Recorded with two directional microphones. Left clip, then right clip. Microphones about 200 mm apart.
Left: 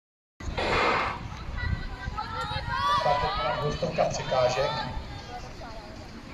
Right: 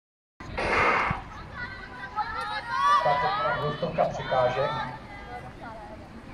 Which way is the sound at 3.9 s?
20° right (ahead or behind).